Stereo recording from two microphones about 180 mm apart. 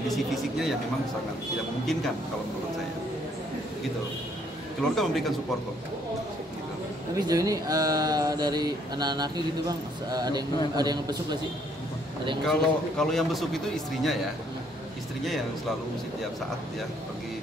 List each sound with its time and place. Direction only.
0.1 s a man's voice: centre (ahead or behind)
4.9 s a man's voice: centre (ahead or behind)
7.2 s speech: 20° right (ahead or behind)
12.4 s a man's voice: 5° left (ahead or behind)